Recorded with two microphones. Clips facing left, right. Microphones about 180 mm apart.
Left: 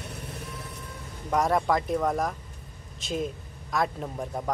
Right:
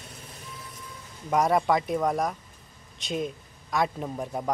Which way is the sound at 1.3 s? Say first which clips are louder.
Right 1 dB; centre (ahead or behind).